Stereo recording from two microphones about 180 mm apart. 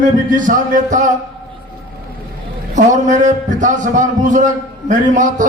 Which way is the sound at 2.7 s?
45° right (ahead or behind).